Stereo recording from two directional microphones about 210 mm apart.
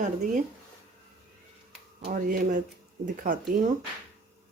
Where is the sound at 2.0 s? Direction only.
40° right (ahead or behind).